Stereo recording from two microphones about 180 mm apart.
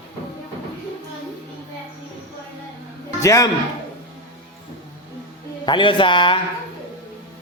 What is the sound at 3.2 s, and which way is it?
Speech, 15° left (ahead or behind).